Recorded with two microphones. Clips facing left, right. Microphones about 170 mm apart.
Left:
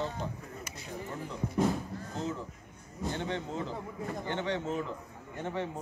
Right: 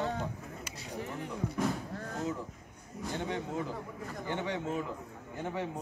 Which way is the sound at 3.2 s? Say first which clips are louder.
Even; 15° right (ahead or behind).